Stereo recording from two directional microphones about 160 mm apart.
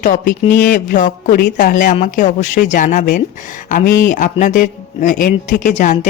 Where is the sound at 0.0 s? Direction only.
55° left (ahead or behind).